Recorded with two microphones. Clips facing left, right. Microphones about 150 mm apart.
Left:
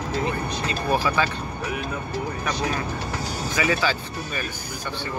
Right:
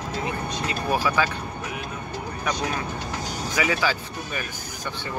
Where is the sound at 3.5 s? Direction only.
10° right (ahead or behind).